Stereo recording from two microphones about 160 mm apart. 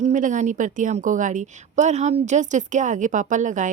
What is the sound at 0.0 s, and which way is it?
A woman's voice, 50° right (ahead or behind).